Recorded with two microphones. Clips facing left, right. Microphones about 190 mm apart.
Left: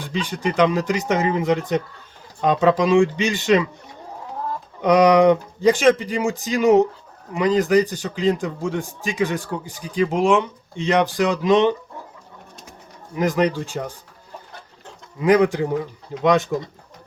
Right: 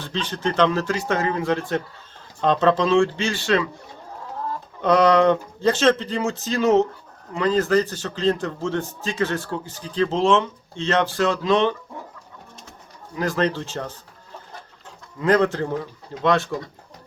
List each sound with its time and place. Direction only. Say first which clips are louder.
0.0 s a man's voice: left 1 dB; 10° left (ahead or behind)
4.8 s a man's voice: left 2 dB; 15° left (ahead or behind)
13.1 s a man's voice: left 3 dB; 15° left (ahead or behind)
15.2 s a man's voice: left 3 dB; 15° left (ahead or behind)